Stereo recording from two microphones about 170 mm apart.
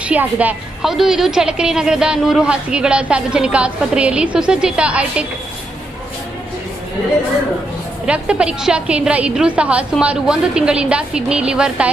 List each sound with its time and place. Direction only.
0.0 s a woman's voice: 10° right (ahead or behind)
8.0 s a woman's voice: 5° right (ahead or behind)